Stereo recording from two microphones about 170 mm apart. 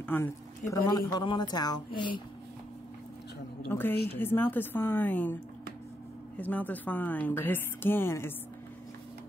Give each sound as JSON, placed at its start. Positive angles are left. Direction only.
{"t": 0.0, "sound": "speech", "side_deg": 15}
{"t": 3.6, "sound": "speech", "side_deg": 10}